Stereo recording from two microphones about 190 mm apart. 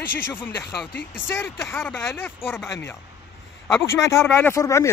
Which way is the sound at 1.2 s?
10° left (ahead or behind).